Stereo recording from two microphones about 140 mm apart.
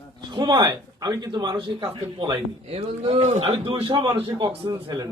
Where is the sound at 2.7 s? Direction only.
45° right (ahead or behind); by 5.0 s 25° right (ahead or behind).